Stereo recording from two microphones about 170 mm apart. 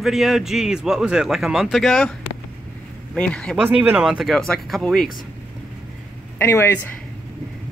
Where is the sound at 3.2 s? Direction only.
5° left (ahead or behind).